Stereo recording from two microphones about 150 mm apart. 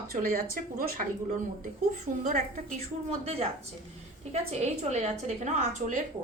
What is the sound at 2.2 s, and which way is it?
Speech, 55° right (ahead or behind).